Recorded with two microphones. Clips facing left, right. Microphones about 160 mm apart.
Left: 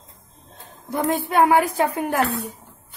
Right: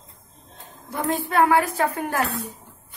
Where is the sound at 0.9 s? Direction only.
25° left (ahead or behind).